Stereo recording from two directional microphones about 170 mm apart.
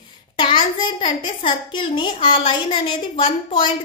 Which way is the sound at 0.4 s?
25° left (ahead or behind).